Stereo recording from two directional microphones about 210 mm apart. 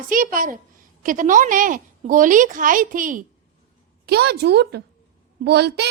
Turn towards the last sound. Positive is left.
turn(degrees=-50)  # may be behind; listen again after turning